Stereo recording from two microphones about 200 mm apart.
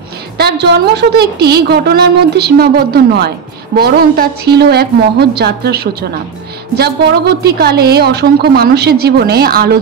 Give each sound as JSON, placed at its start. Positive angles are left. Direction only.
{"t": 0.4, "sound": "a woman's voice", "side_deg": -55}